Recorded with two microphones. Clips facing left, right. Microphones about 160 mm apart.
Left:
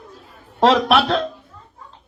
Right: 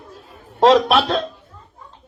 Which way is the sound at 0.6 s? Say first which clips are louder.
Right 2 dB; 20° right (ahead or behind).